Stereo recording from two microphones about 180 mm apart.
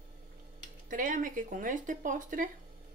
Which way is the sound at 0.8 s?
50° right (ahead or behind).